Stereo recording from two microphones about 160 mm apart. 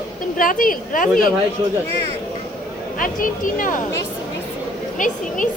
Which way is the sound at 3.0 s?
60° left (ahead or behind).